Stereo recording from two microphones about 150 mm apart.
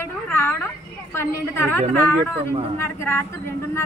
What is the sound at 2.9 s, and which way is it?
Speech, 15° left (ahead or behind).